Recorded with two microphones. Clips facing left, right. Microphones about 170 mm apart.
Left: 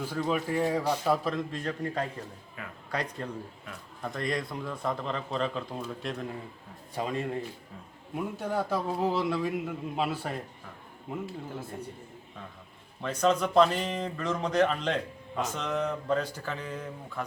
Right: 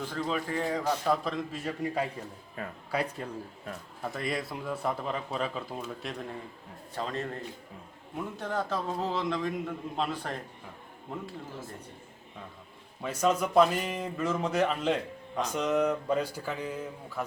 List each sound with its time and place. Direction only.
0.0 s a man's voice: 10° left (ahead or behind); by 2.0 s 10° right (ahead or behind)
2.6 s speech: 35° right (ahead or behind)
2.9 s a man's voice: 5° right (ahead or behind)
6.9 s a man's voice: 10° left (ahead or behind)
13.0 s a man's voice: 10° right (ahead or behind)